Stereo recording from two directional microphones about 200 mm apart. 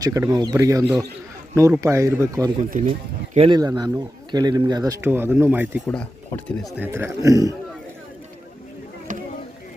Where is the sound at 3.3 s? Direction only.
25° right (ahead or behind).